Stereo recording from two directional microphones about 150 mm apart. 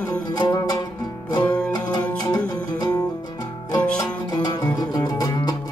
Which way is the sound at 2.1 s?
25° left (ahead or behind).